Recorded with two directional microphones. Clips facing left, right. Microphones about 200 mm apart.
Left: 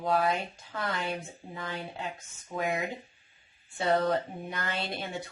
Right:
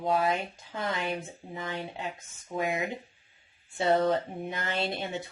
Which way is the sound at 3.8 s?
25° right (ahead or behind).